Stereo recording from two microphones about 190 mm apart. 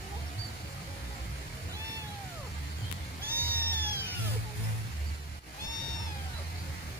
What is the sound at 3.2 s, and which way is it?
Cat, 10° right (ahead or behind).